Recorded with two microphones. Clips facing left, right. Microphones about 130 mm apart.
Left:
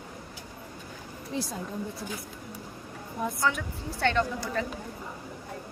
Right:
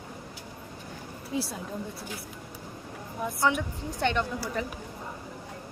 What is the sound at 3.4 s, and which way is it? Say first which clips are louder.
A woman's voice: right 5 dB; 20° right (ahead or behind).